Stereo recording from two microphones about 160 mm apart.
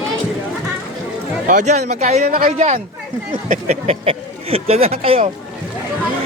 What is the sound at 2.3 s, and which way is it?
Speech, 65° right (ahead or behind).